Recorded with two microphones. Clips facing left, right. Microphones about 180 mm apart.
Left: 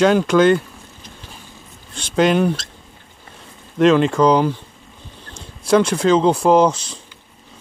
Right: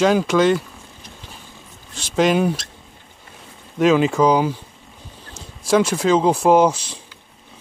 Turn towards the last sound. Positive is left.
turn(degrees=-10)  # may be behind; listen again after turning